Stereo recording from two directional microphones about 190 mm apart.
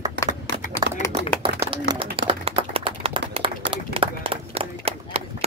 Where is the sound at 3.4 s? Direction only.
30° right (ahead or behind).